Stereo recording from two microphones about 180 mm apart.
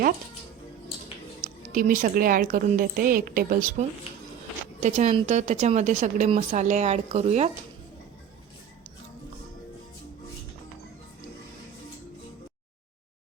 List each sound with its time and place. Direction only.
1.7 s a woman's voice: 50° right (ahead or behind)